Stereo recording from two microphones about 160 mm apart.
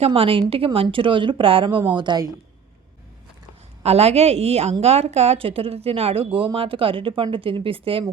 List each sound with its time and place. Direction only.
0.0 s a woman's voice: 35° right (ahead or behind)
3.8 s a woman's voice: 40° right (ahead or behind)